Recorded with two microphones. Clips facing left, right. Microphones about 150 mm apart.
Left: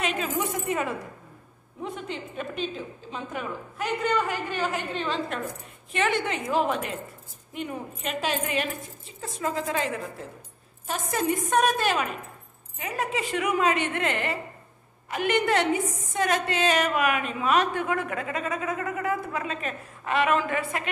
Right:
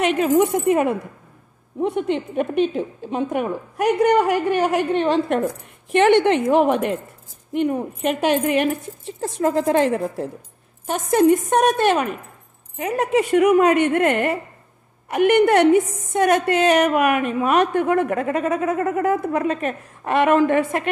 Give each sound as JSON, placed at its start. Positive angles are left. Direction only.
{"t": 0.0, "sound": "a woman's voice", "side_deg": -60}
{"t": 9.2, "sound": "a woman's voice", "side_deg": -70}
{"t": 12.7, "sound": "a woman's voice", "side_deg": -55}